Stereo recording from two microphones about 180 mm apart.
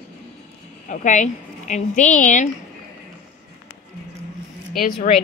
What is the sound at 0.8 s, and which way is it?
A woman's voice, 45° left (ahead or behind).